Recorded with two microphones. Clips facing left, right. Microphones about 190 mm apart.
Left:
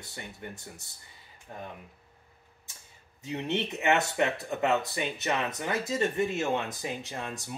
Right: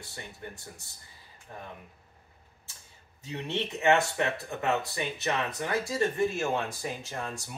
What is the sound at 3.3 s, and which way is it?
Speech, 20° left (ahead or behind).